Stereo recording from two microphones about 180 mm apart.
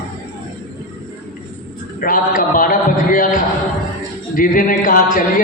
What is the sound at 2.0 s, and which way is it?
A man's voice, 50° left (ahead or behind).